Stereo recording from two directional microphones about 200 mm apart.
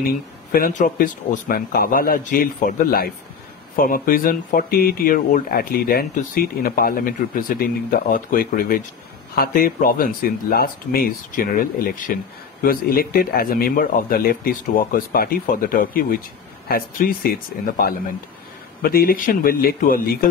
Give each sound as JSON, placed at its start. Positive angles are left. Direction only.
{"t": 0.5, "sound": "speech", "side_deg": 45}